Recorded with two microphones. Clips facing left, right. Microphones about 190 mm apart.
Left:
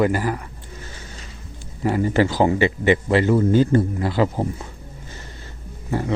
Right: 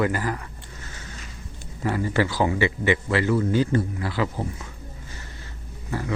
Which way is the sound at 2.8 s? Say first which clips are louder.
Left 6 dB; 25° left (ahead or behind).